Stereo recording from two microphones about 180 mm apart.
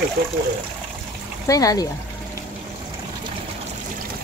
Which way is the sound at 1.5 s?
20° left (ahead or behind).